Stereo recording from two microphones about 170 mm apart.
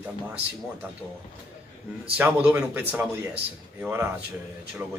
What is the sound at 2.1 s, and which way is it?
Speech, 10° right (ahead or behind).